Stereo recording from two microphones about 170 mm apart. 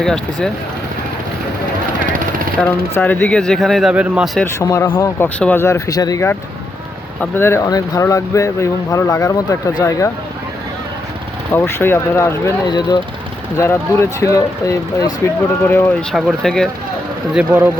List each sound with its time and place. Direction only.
0.0 s speech: 5° left (ahead or behind)
2.9 s speech: 10° left (ahead or behind); by 4.3 s 5° right (ahead or behind)
4.6 s speech: 20° left (ahead or behind)
11.5 s speech: 15° left (ahead or behind)
17.3 s speech: 10° right (ahead or behind)